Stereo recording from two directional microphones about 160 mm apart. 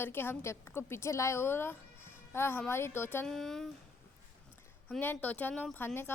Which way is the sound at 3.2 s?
Centre (ahead or behind).